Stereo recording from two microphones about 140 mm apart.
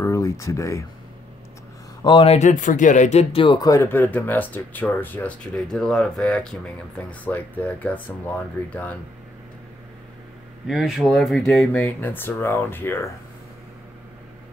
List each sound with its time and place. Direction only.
0.0 s speech: 20° left (ahead or behind)
2.0 s speech: 40° left (ahead or behind)
2.3 s speech: 60° left (ahead or behind)
3.4 s speech: 25° left (ahead or behind)
10.7 s speech: centre (ahead or behind); by 13.1 s 15° left (ahead or behind)